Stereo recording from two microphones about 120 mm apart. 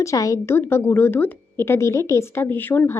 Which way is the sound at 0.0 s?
25° left (ahead or behind).